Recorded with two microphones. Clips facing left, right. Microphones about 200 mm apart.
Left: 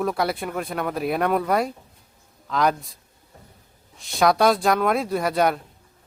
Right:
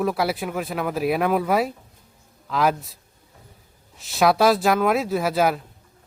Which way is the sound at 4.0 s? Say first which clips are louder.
Right 1 dB; 5° right (ahead or behind).